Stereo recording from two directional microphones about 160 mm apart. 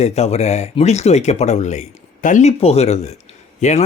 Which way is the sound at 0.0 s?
40° left (ahead or behind).